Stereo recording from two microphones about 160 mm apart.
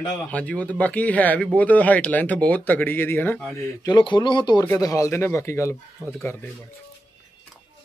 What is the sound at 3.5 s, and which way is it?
Speech, 25° left (ahead or behind).